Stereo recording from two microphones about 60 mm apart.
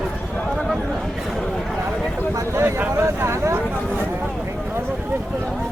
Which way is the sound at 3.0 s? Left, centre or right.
Right.